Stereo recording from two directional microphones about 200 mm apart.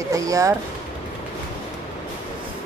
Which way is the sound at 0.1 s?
15° right (ahead or behind).